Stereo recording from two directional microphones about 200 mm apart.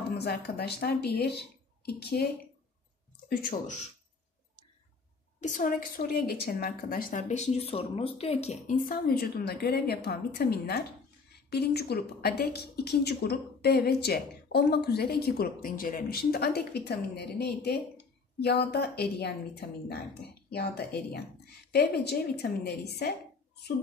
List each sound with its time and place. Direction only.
0.1 s a woman's voice: 55° left (ahead or behind)
3.3 s speech: 45° left (ahead or behind)
5.4 s a woman's voice: 40° left (ahead or behind)